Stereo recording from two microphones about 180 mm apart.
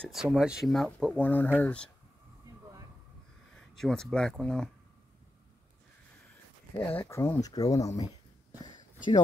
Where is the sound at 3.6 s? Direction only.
5° left (ahead or behind).